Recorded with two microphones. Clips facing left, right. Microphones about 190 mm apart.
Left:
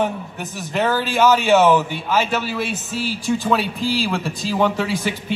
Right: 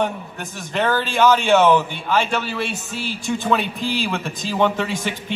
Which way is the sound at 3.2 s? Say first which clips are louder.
Left 1 dB; centre (ahead or behind).